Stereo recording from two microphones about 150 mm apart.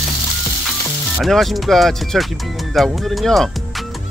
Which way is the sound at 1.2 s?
Centre (ahead or behind).